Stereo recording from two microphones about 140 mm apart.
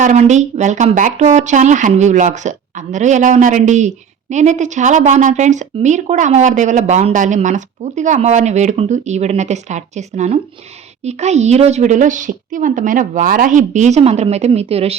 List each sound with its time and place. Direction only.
0.0 s speech: 60° right (ahead or behind)